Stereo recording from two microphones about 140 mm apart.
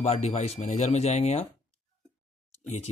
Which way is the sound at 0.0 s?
50° left (ahead or behind).